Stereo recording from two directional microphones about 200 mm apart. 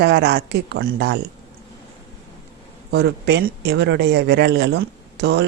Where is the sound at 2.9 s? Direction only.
60° right (ahead or behind).